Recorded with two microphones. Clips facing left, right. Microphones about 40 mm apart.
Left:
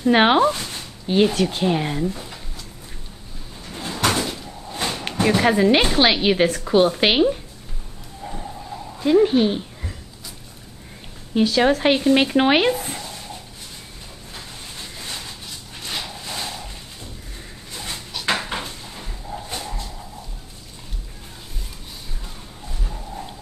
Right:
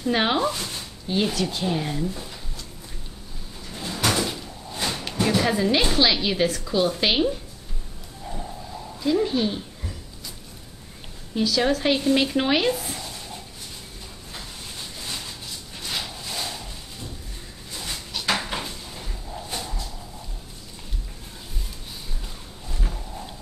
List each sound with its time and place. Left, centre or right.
0.0 s speech: left
3.7 s cupboard open or close: centre
4.7 s speech: left
8.9 s speech: left
11.3 s speech: left
18.2 s dog: centre